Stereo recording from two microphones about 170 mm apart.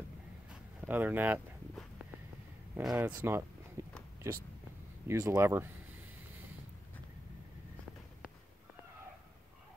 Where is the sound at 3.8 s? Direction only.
15° right (ahead or behind).